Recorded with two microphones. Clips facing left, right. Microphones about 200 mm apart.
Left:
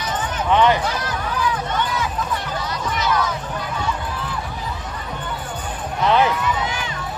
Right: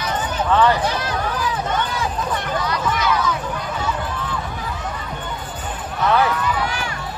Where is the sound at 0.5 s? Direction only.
15° left (ahead or behind).